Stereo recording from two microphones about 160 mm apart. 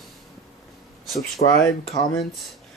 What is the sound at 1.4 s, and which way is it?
Speech, 50° left (ahead or behind).